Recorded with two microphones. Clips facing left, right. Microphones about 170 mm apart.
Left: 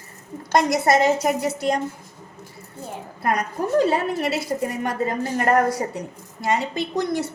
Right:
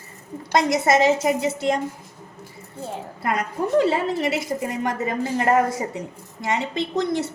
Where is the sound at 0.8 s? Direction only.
25° right (ahead or behind).